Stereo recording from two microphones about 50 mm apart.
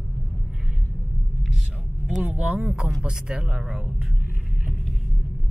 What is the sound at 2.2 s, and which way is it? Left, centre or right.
Speech, right.